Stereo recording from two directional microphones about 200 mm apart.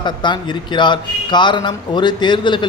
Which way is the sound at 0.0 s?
20° left (ahead or behind).